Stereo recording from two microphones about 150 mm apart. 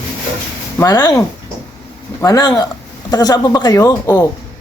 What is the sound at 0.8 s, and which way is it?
Speech, 25° left (ahead or behind).